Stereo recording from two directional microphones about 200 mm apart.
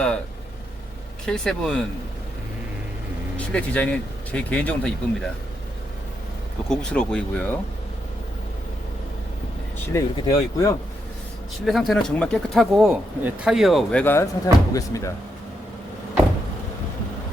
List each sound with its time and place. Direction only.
1.2 s speech: 5° left (ahead or behind)
3.3 s speech: 5° left (ahead or behind)
6.7 s speech: 5° left (ahead or behind)
9.7 s speech: 15° left (ahead or behind)
11.6 s speech: centre (ahead or behind)
14.0 s speech: 10° left (ahead or behind)